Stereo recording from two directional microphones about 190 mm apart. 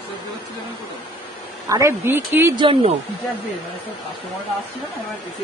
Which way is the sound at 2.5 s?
25° right (ahead or behind).